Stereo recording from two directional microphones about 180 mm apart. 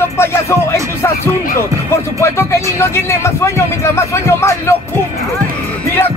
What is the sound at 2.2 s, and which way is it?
Speech, 15° left (ahead or behind).